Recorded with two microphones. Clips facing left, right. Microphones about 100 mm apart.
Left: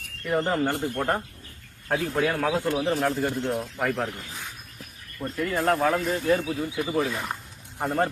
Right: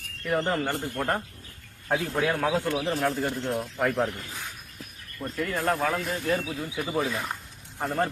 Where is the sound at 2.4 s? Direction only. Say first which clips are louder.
Left 1 dB; centre (ahead or behind).